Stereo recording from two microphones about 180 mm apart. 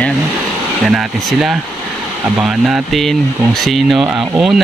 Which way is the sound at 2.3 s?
5° right (ahead or behind).